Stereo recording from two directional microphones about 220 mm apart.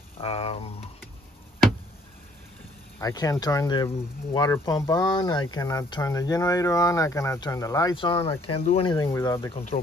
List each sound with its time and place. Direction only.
0.2 s speech: 25° left (ahead or behind)
3.0 s speech: 15° left (ahead or behind)
8.9 s speech: 15° left (ahead or behind)